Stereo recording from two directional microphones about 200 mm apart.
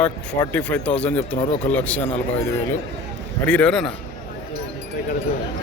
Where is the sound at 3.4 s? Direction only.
5° left (ahead or behind).